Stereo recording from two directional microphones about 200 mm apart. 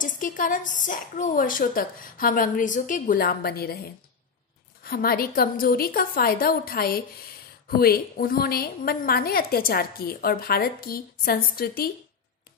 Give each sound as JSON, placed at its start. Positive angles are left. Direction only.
{"t": 0.0, "sound": "a woman's voice", "side_deg": 40}